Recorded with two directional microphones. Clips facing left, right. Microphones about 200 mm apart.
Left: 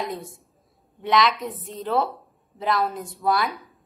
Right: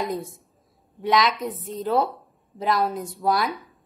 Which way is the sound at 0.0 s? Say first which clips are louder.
Right 3 dB; centre (ahead or behind).